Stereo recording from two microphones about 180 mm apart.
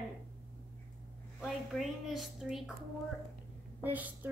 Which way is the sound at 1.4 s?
Centre (ahead or behind).